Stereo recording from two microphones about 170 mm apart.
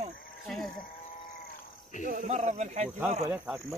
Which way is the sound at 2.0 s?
50° right (ahead or behind).